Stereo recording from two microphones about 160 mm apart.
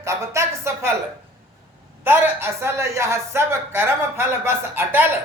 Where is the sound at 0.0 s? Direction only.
20° right (ahead or behind).